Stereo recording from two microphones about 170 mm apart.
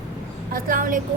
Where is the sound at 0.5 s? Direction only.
55° right (ahead or behind).